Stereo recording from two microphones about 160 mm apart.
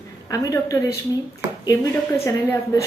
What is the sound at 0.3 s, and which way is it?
A woman's voice, 20° left (ahead or behind).